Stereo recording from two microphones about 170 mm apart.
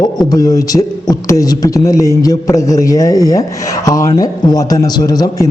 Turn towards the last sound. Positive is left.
turn(degrees=20)  # may be behind; listen again after turning